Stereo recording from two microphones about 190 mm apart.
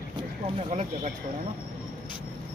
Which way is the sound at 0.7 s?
35° right (ahead or behind).